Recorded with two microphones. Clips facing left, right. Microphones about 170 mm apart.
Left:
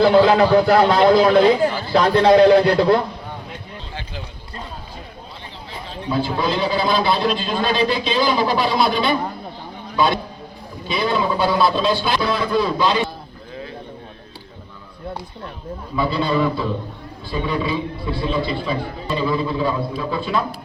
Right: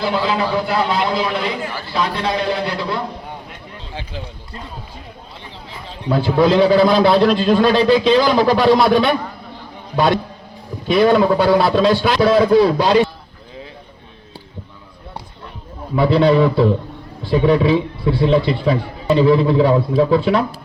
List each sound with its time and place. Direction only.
0.3 s a man's voice: 45° left (ahead or behind)
6.1 s a man's voice: 75° right (ahead or behind)
16.0 s a man's voice: 75° right (ahead or behind)